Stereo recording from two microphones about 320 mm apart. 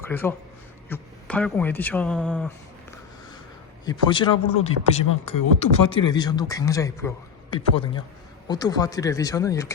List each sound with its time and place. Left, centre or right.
0.0 s a man's voice: centre
3.8 s speech: centre
5.3 s speech: left
5.9 s speech: centre